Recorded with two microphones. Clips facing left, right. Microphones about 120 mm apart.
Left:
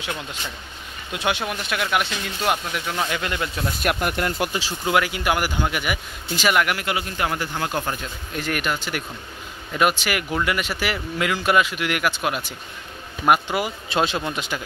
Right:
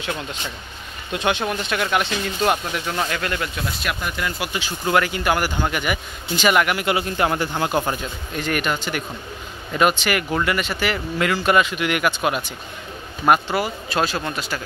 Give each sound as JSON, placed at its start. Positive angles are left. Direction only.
{"t": 1.1, "sound": "speech", "side_deg": 5}
{"t": 3.1, "sound": "speech", "side_deg": 15}
{"t": 3.8, "sound": "speech", "side_deg": 55}
{"t": 4.8, "sound": "speech", "side_deg": 10}
{"t": 6.9, "sound": "speech", "side_deg": -30}
{"t": 7.7, "sound": "a man's voice", "side_deg": -10}
{"t": 8.4, "sound": "speech", "side_deg": 0}
{"t": 13.3, "sound": "speech", "side_deg": 15}